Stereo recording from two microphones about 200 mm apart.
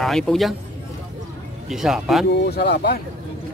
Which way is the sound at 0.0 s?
Centre (ahead or behind).